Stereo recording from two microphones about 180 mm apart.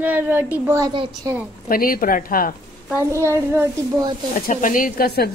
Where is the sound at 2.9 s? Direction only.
15° right (ahead or behind).